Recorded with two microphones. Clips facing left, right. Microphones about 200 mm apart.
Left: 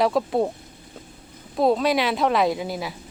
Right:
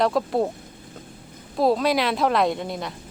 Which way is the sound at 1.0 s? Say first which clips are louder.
Even; 5° left (ahead or behind).